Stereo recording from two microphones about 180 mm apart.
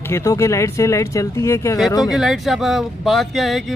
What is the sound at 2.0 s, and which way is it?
Speech, centre (ahead or behind).